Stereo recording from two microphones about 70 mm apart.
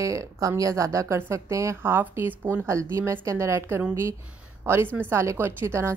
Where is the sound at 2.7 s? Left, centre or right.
Right.